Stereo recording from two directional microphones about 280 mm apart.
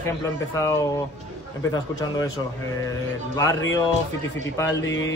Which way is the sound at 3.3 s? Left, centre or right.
Centre.